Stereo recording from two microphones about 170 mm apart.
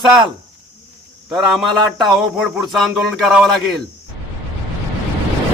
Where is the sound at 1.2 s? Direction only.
Centre (ahead or behind).